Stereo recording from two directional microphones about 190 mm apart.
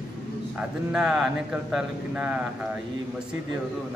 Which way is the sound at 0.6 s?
5° right (ahead or behind).